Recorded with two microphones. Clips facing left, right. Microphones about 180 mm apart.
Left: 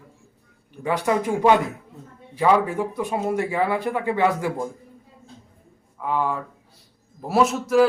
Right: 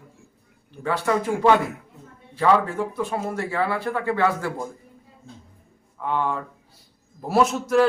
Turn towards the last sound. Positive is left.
turn(degrees=0)  # may be behind; listen again after turning